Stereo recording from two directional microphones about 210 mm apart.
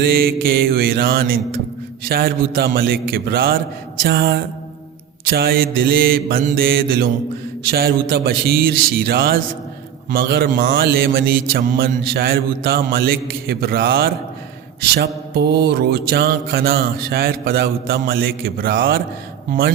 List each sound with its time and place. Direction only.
0.0 s mantra: 45° right (ahead or behind)